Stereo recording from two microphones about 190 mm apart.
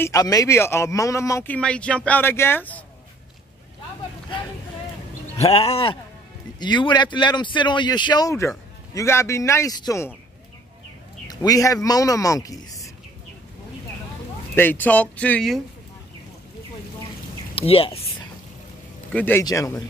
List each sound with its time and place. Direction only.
0.0 s speech: 20° left (ahead or behind)
5.4 s speech: 35° left (ahead or behind); by 10.1 s 15° left (ahead or behind)
11.2 s speech: 20° left (ahead or behind)
14.5 s speech: 10° left (ahead or behind)
17.6 s speech: 30° left (ahead or behind)
19.1 s speech: 10° left (ahead or behind)